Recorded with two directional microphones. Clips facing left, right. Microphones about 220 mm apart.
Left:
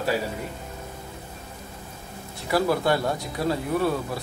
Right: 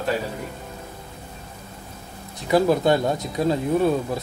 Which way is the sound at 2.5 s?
20° right (ahead or behind).